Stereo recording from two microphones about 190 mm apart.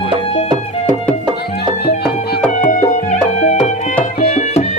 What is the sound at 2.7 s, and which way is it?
Music, 40° left (ahead or behind).